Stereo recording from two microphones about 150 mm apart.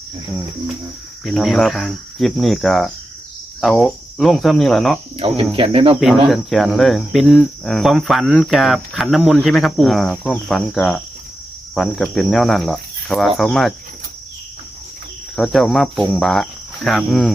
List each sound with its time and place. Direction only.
1.2 s cricket: centre (ahead or behind)
5.1 s cricket: 40° right (ahead or behind)
6.2 s cricket: centre (ahead or behind)
15.4 s cricket: centre (ahead or behind)